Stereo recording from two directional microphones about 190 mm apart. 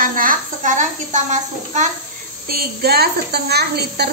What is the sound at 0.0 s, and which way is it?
A child's voice, 45° right (ahead or behind).